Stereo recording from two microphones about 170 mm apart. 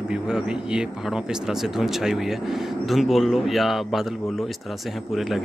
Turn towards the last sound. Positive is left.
turn(degrees=0)  # may be behind; listen again after turning